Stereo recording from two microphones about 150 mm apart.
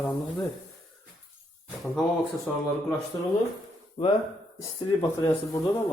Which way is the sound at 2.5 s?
5° left (ahead or behind).